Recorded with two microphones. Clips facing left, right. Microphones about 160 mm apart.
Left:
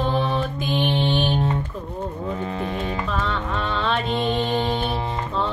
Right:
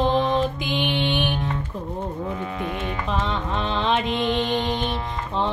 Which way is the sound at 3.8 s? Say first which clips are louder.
Right 1 dB; 20° right (ahead or behind).